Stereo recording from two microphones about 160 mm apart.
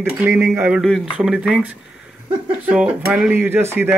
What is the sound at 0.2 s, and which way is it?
Speech, 15° right (ahead or behind).